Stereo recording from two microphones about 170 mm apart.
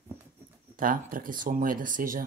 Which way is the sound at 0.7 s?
55° right (ahead or behind).